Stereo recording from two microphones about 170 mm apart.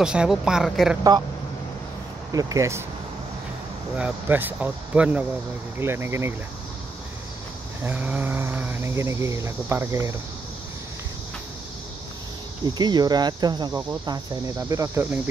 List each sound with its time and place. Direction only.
0.0 s a woman's voice: 5° right (ahead or behind)
2.3 s cricket: 20° right (ahead or behind)
3.9 s speech: 10° right (ahead or behind)
7.8 s speech: 10° right (ahead or behind)
12.7 s cricket: 25° right (ahead or behind)